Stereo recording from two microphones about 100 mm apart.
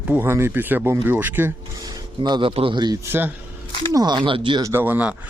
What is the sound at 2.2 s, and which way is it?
Speech, 55° right (ahead or behind).